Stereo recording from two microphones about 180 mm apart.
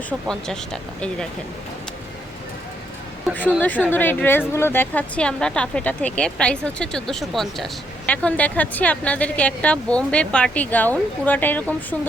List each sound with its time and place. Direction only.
0.3 s speech: 5° left (ahead or behind)
3.8 s a woman's voice: 10° left (ahead or behind)